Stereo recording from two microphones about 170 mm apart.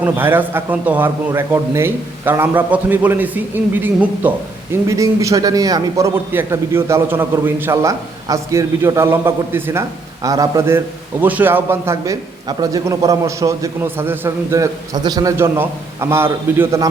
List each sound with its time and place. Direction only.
0.0 s a man's voice: 10° right (ahead or behind)